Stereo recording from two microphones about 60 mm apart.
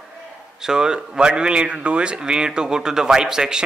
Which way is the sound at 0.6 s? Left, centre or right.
Centre.